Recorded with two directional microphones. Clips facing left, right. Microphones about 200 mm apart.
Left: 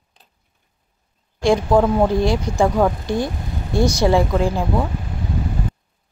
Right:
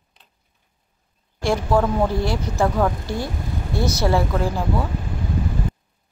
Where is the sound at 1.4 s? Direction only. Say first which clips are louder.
Left 4 dB; 15° left (ahead or behind).